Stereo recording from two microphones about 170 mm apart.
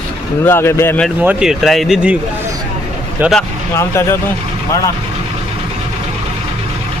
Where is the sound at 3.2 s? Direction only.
Centre (ahead or behind).